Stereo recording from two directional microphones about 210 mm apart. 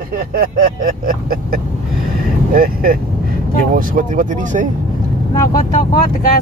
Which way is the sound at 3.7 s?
40° right (ahead or behind).